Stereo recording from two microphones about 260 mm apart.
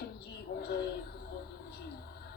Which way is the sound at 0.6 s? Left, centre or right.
Left.